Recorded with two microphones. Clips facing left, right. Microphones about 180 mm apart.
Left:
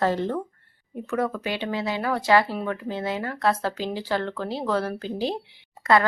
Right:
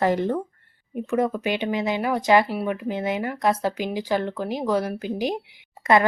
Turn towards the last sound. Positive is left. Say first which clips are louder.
# right 2 dB
turn(degrees=-20)  # may be behind; listen again after turning